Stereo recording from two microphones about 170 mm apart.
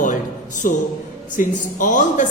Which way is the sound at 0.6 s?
50° left (ahead or behind).